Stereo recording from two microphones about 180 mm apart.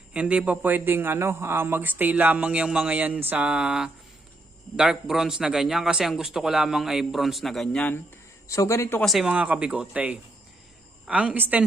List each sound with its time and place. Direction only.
0.1 s a man's voice: 5° right (ahead or behind)
8.4 s a man's voice: 15° left (ahead or behind)
9.0 s speech: centre (ahead or behind)